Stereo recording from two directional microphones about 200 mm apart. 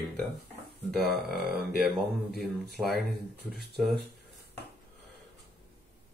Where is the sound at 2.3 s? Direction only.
55° right (ahead or behind).